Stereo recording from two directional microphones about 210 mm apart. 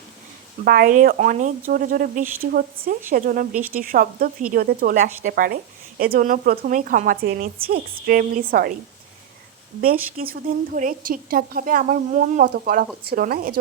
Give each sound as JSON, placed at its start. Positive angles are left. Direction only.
{"t": 0.6, "sound": "a woman's voice", "side_deg": -45}
{"t": 9.8, "sound": "a woman's voice", "side_deg": -45}